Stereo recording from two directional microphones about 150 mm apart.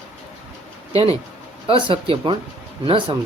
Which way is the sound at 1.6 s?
35° right (ahead or behind).